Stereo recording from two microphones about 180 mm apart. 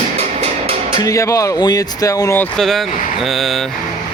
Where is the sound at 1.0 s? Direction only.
20° left (ahead or behind); by 3.6 s centre (ahead or behind).